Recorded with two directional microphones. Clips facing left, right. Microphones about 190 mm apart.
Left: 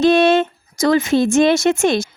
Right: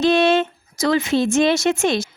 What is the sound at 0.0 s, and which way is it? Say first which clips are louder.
A woman's voice: left 3 dB; 50° left (ahead or behind).